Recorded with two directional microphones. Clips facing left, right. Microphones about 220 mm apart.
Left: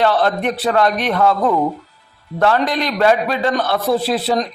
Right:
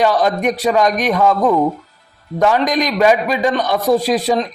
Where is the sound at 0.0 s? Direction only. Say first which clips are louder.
Right 1 dB; 10° right (ahead or behind).